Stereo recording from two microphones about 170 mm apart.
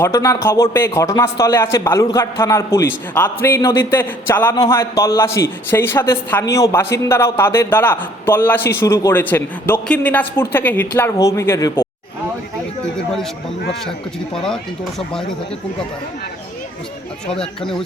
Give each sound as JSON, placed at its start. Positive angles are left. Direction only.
{"t": 0.0, "sound": "a man's voice", "side_deg": 15}
{"t": 14.3, "sound": "speech", "side_deg": 5}
{"t": 17.4, "sound": "speech", "side_deg": 5}